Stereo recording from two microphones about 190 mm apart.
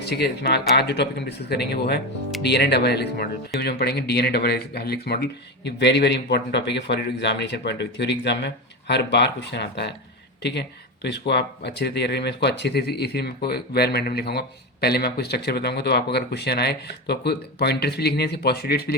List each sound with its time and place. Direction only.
0.0 s speech: 60° left (ahead or behind)